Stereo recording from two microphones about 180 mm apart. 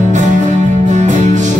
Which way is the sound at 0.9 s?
40° right (ahead or behind).